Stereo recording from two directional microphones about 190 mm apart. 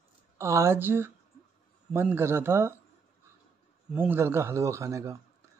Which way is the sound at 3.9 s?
10° right (ahead or behind).